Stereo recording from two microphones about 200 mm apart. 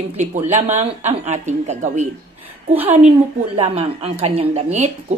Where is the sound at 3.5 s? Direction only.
30° right (ahead or behind).